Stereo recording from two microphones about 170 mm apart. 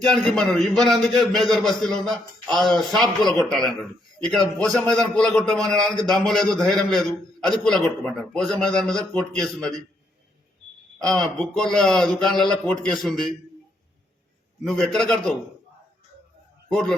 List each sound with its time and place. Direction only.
0.0 s a man's voice: 5° left (ahead or behind)
2.7 s a man's voice: 25° right (ahead or behind)
3.3 s a man's voice: 5° left (ahead or behind)
10.9 s a man's voice: 5° left (ahead or behind)
14.7 s a man's voice: centre (ahead or behind)